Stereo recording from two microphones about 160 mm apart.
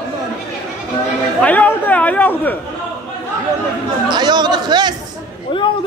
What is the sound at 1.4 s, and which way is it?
A man's voice, 10° left (ahead or behind).